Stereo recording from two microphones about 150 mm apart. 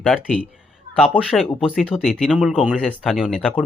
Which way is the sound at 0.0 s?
5° right (ahead or behind).